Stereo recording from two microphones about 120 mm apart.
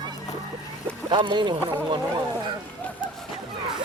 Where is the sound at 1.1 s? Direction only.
40° right (ahead or behind).